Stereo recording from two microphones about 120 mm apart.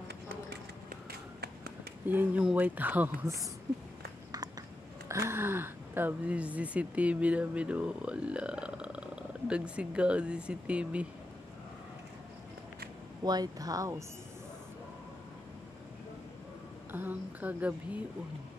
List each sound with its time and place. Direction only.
2.0 s speech: 15° right (ahead or behind)
4.3 s speech: 30° right (ahead or behind); by 11.1 s 10° right (ahead or behind)
13.2 s speech: 35° right (ahead or behind)
16.9 s speech: 15° right (ahead or behind)